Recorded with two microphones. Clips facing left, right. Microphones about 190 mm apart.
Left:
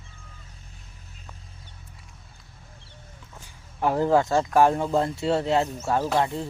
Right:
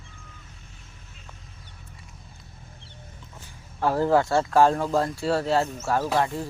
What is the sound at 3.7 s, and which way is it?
Speech, 20° left (ahead or behind).